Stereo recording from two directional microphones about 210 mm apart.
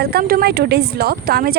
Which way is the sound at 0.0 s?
45° right (ahead or behind).